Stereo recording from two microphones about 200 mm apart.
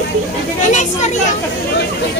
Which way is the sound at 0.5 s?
35° left (ahead or behind).